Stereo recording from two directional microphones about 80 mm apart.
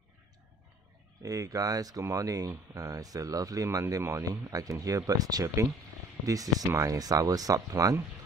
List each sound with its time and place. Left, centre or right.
1.2 s speech: right